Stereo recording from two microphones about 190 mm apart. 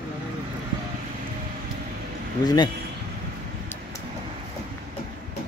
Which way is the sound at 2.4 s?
25° left (ahead or behind).